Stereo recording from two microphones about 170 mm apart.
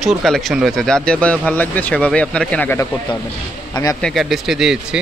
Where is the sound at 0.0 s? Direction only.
Centre (ahead or behind).